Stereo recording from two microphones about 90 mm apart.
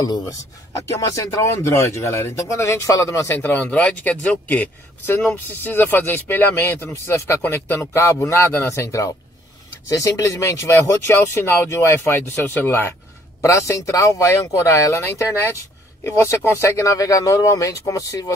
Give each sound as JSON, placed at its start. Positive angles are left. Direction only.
{"t": 0.0, "sound": "speech", "side_deg": 40}
{"t": 3.3, "sound": "speech", "side_deg": 20}
{"t": 13.4, "sound": "speech", "side_deg": 35}